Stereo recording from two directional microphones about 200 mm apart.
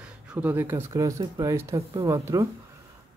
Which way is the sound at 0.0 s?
5° right (ahead or behind).